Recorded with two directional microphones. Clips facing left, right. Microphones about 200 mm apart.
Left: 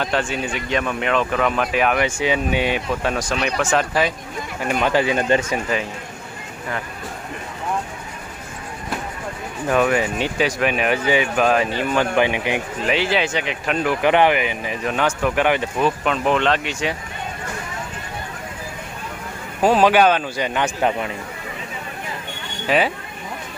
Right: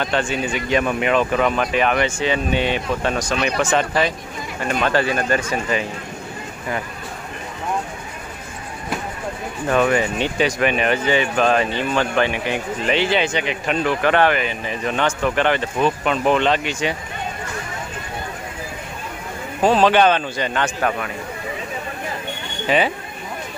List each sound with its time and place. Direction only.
0.0 s speech: centre (ahead or behind); by 5.6 s 20° left (ahead or behind)
9.7 s speech: 5° left (ahead or behind)
12.8 s speech: 5° left (ahead or behind)
16.0 s speech: centre (ahead or behind)
19.6 s speech: 10° left (ahead or behind)
22.7 s speech: centre (ahead or behind)